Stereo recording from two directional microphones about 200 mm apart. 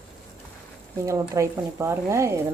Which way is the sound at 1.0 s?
15° right (ahead or behind).